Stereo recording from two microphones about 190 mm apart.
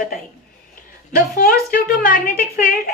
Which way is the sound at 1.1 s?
50° left (ahead or behind).